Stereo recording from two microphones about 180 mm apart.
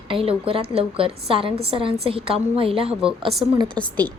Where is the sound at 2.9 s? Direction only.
5° right (ahead or behind).